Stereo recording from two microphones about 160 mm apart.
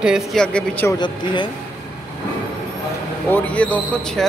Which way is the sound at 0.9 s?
30° left (ahead or behind).